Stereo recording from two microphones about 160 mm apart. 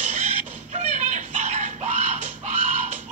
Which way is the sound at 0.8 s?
45° right (ahead or behind).